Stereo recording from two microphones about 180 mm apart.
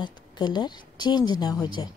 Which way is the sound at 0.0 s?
25° left (ahead or behind).